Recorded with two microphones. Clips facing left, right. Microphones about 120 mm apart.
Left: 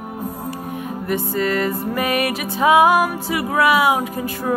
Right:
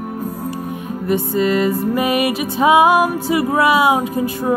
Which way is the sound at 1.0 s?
20° right (ahead or behind).